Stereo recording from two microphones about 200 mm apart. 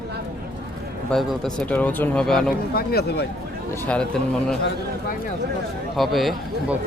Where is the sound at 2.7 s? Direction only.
50° left (ahead or behind).